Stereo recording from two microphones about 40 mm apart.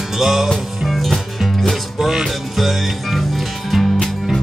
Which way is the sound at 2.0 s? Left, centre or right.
Centre.